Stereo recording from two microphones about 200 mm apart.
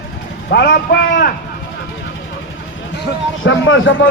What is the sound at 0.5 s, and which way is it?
Speech, 55° left (ahead or behind).